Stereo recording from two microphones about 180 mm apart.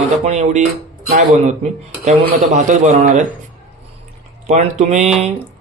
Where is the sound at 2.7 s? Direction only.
40° right (ahead or behind).